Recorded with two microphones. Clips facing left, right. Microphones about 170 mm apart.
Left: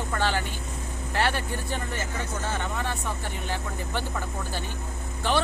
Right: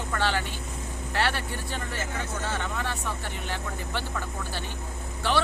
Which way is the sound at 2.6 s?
20° left (ahead or behind).